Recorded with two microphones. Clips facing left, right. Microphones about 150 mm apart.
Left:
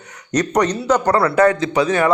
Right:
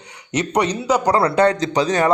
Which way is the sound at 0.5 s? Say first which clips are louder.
Left 1 dB; 10° right (ahead or behind).